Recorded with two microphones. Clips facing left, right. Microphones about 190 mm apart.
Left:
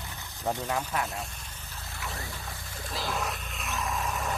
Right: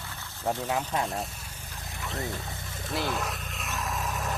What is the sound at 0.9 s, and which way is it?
Speech, 25° right (ahead or behind).